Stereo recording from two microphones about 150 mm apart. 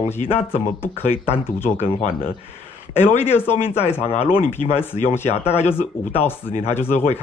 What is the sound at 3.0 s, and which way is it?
A man's voice, 15° left (ahead or behind).